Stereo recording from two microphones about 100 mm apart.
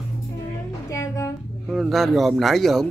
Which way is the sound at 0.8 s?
30° left (ahead or behind).